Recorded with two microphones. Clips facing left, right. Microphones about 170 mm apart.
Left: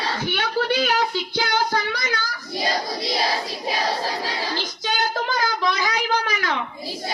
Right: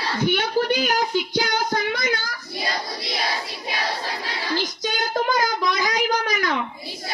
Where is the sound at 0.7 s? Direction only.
40° right (ahead or behind).